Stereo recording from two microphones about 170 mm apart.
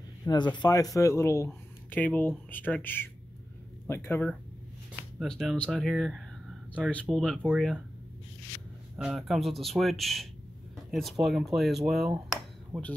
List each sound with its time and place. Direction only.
0.2 s speech: 25° left (ahead or behind)
5.2 s speech: centre (ahead or behind)
8.9 s speech: centre (ahead or behind)